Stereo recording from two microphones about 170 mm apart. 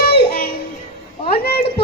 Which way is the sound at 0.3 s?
65° left (ahead or behind).